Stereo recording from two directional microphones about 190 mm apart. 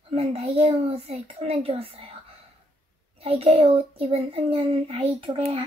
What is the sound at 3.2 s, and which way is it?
A child's voice, 30° right (ahead or behind).